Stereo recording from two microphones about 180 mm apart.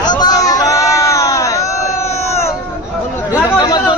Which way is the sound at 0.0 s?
25° left (ahead or behind).